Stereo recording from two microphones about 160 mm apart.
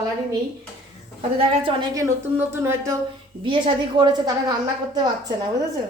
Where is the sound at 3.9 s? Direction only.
25° right (ahead or behind).